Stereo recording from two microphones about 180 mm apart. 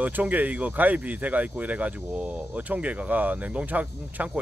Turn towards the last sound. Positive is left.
turn(degrees=-10)  # may be behind; listen again after turning